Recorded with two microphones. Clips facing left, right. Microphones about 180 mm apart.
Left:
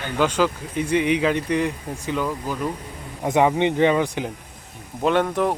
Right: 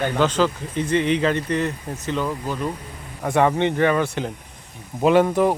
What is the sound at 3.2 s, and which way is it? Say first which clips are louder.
Speech: even; 15° left (ahead or behind).